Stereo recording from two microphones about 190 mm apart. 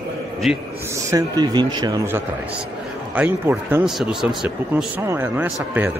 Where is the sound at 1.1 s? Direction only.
20° right (ahead or behind).